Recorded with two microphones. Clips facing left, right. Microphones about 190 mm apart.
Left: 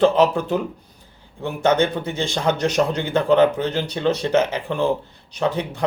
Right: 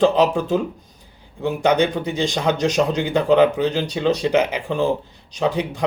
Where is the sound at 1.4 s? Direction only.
15° right (ahead or behind).